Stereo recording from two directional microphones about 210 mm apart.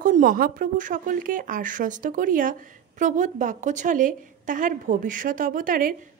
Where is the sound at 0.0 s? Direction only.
40° right (ahead or behind).